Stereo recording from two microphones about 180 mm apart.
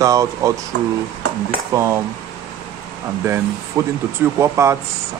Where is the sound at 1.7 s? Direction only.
15° right (ahead or behind).